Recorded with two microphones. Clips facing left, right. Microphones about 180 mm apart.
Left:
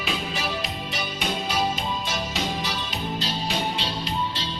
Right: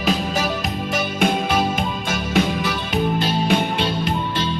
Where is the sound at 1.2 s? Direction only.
55° right (ahead or behind).